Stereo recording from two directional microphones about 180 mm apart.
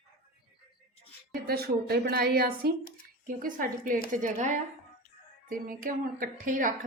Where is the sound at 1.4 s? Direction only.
60° right (ahead or behind).